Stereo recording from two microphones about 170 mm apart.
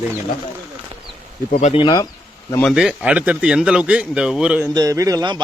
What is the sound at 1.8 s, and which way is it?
Speech, 20° left (ahead or behind).